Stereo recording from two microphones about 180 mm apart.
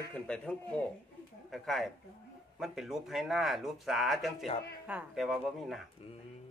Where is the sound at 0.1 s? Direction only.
5° left (ahead or behind).